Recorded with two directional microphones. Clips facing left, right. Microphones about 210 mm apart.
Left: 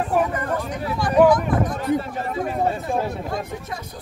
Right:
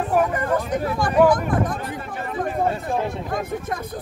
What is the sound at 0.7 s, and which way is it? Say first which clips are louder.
Speech: left 2 dB; 45° right (ahead or behind).